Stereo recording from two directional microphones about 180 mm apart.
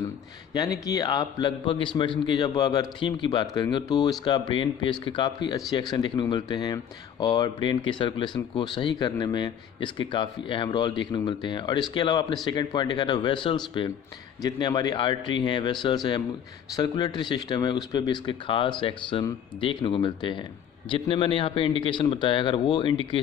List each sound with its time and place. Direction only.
0.5 s a man's voice: 20° left (ahead or behind)